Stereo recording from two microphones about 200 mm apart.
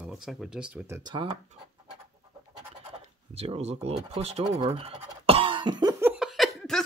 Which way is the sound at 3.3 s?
30° right (ahead or behind).